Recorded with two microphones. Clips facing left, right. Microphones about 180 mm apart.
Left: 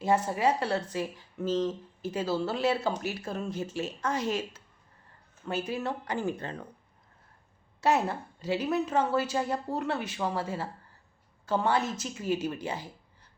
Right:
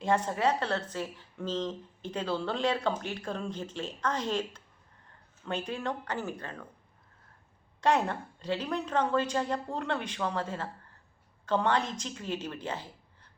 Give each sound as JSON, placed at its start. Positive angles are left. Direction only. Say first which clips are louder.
{"t": 0.0, "sound": "a woman's voice", "louder": "left 2 dB", "side_deg": 10}
{"t": 7.8, "sound": "a woman's voice", "louder": "left 1 dB", "side_deg": 5}